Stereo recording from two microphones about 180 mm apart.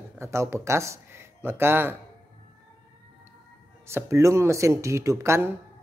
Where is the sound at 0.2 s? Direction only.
15° right (ahead or behind).